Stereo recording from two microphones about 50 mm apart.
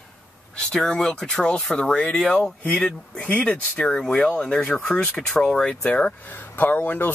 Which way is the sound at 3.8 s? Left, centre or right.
Centre.